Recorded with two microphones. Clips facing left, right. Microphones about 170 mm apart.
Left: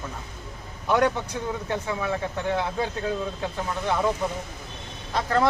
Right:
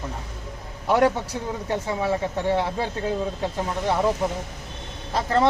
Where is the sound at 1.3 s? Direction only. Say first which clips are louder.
Right 1 dB; 25° right (ahead or behind).